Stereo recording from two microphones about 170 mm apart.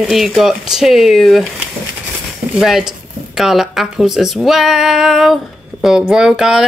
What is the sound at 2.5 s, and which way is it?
Speech, centre (ahead or behind).